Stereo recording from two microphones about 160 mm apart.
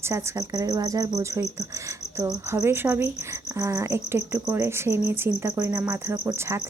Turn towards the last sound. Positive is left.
turn(degrees=-15)  # may be behind; listen again after turning